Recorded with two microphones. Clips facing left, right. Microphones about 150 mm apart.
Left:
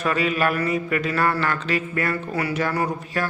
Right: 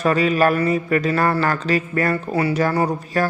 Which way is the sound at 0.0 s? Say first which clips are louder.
Right 5 dB; 35° right (ahead or behind).